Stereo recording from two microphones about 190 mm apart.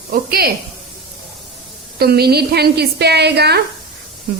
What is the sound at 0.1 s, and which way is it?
Speech, 50° right (ahead or behind).